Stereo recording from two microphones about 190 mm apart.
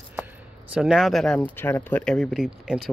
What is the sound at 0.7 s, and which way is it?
Speech, centre (ahead or behind).